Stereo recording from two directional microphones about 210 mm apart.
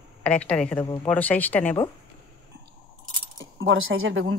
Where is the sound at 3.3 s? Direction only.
65° right (ahead or behind).